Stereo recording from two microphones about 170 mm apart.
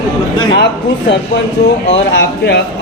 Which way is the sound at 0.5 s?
90° left.